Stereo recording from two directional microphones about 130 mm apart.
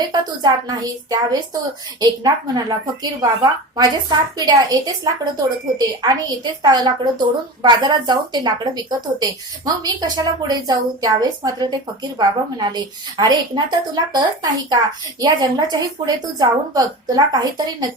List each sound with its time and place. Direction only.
0.1 s a woman's voice: 35° right (ahead or behind)